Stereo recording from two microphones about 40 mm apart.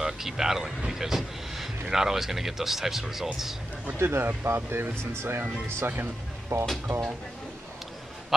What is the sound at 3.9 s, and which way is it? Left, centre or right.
Speech, right.